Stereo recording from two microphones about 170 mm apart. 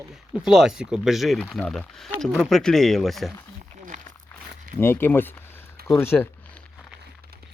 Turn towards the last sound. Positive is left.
turn(degrees=15)  # may be behind; listen again after turning